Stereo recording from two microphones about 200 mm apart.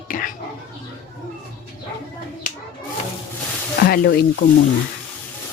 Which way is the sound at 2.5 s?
40° left (ahead or behind).